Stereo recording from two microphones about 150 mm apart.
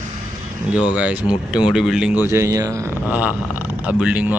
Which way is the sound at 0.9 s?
10° right (ahead or behind).